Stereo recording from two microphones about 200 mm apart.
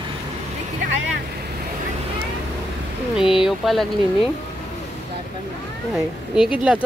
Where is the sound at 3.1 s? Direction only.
5° right (ahead or behind).